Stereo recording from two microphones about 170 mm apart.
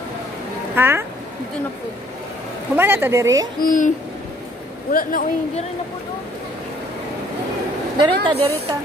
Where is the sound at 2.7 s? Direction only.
10° right (ahead or behind).